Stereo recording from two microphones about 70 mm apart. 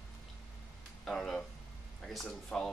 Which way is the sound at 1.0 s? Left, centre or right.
Centre.